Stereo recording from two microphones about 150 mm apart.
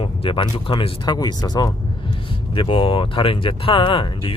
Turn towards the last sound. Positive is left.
turn(degrees=35)  # may be behind; listen again after turning